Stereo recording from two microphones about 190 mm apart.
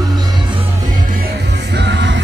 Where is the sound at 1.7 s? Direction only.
65° right (ahead or behind).